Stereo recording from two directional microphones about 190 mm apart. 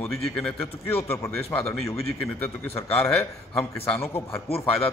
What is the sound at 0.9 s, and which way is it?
Speech, 30° left (ahead or behind).